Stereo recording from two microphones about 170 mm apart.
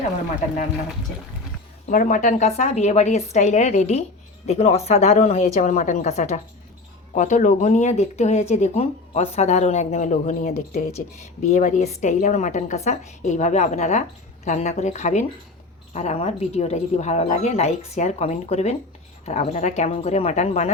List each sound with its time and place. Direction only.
1.9 s speech: 50° left (ahead or behind)